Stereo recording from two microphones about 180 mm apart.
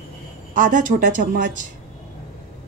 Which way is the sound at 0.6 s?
45° right (ahead or behind).